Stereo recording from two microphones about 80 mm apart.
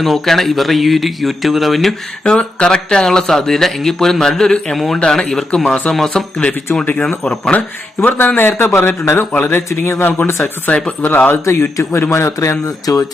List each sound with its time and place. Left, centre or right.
0.0 s speech: centre
2.2 s speech: centre
7.9 s speech: left
11.8 s speech: left